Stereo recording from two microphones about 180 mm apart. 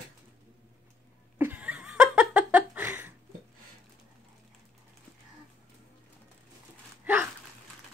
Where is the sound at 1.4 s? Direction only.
10° right (ahead or behind).